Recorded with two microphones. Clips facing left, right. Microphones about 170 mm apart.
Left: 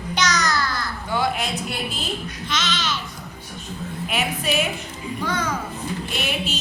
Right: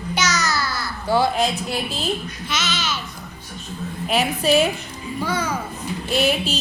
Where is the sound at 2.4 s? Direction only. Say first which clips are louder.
Even; 5° right (ahead or behind).